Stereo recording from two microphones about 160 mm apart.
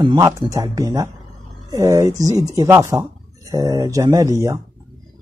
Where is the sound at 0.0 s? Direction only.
25° right (ahead or behind).